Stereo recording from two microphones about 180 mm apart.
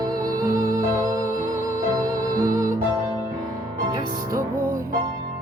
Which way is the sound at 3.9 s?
20° right (ahead or behind).